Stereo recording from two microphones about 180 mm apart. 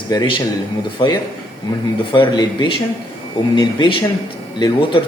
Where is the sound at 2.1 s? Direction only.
25° left (ahead or behind).